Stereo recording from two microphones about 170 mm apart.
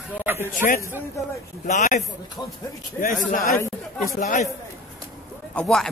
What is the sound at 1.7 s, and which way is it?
Speech, 45° left (ahead or behind).